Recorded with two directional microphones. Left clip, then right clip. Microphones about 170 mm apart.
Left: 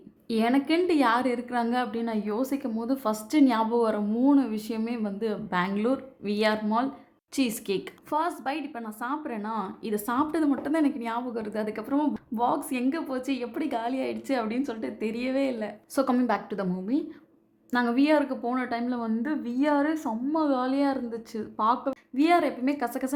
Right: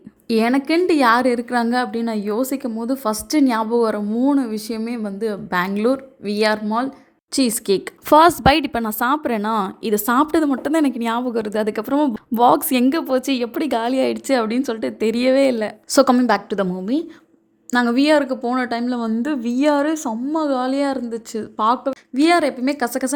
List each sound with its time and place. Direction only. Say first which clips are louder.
0.3 s a woman's voice: right 7 dB; 30° right (ahead or behind)
8.1 s a woman's voice: right 16 dB; 50° right (ahead or behind); by 23.1 s 30° right (ahead or behind)